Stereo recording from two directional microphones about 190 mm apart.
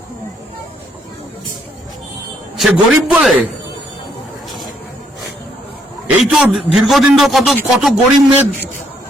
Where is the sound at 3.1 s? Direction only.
5° right (ahead or behind).